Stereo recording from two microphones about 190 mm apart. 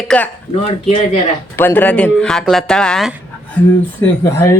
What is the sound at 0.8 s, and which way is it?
Speech, 35° left (ahead or behind).